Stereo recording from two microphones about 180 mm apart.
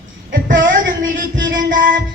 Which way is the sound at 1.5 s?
50° right (ahead or behind).